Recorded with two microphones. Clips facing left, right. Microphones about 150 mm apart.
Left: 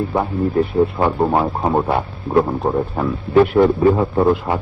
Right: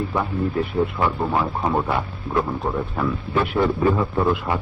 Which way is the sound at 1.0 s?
45° left (ahead or behind).